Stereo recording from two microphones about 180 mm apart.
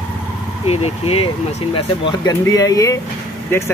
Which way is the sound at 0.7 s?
35° left (ahead or behind).